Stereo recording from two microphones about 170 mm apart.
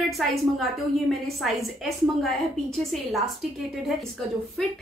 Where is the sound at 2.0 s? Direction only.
Centre (ahead or behind).